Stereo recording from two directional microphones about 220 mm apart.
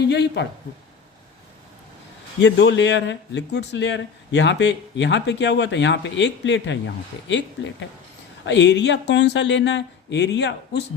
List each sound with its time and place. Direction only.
0.0 s speech: 50° left (ahead or behind)
2.4 s speech: 50° left (ahead or behind)